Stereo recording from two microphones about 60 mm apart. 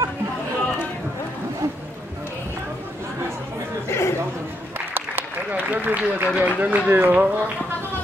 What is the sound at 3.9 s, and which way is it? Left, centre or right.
Chatter, left.